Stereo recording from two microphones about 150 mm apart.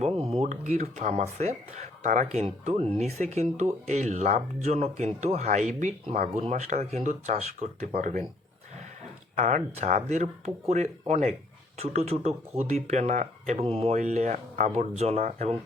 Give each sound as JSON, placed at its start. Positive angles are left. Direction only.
{"t": 0.0, "sound": "speech", "side_deg": -40}
{"t": 9.3, "sound": "speech", "side_deg": -55}